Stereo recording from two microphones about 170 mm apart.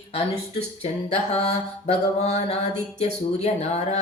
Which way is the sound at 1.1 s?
35° left (ahead or behind).